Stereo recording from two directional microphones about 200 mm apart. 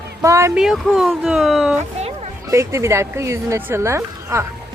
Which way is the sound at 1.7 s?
30° right (ahead or behind).